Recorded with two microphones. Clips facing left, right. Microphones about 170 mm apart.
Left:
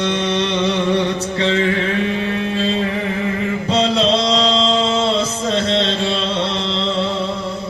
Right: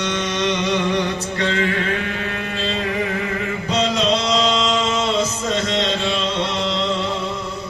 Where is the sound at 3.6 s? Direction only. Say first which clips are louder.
Left 3 dB; 30° left (ahead or behind).